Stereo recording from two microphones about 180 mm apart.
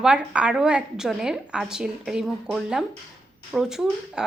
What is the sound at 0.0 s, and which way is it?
Speech, 5° right (ahead or behind).